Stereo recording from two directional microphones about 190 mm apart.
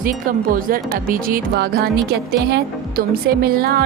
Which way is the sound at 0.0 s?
50° right (ahead or behind).